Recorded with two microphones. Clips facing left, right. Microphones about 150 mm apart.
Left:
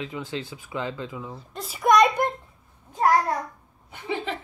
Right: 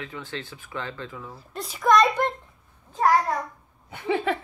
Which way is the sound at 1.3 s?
Centre (ahead or behind).